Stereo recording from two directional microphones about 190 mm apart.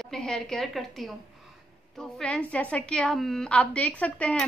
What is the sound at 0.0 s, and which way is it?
A woman's voice, centre (ahead or behind).